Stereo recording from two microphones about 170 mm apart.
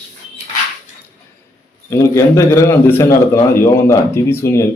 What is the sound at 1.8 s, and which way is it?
A man's voice, 20° left (ahead or behind).